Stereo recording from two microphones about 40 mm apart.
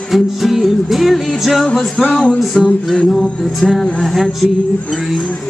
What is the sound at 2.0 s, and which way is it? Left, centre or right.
Speech, left.